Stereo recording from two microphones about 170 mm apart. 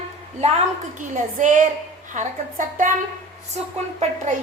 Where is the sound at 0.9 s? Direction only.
50° right (ahead or behind).